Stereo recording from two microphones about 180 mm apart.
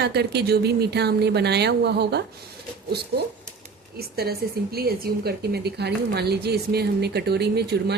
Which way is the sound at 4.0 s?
60° right (ahead or behind).